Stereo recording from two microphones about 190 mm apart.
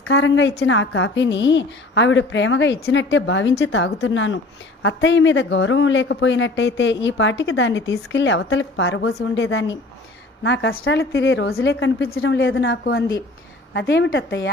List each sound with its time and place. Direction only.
0.0 s a woman's voice: 75° left (ahead or behind)